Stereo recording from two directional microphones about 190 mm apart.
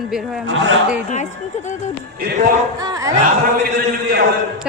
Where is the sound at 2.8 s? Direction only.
20° right (ahead or behind).